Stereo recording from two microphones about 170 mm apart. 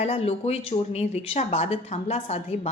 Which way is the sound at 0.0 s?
35° left (ahead or behind).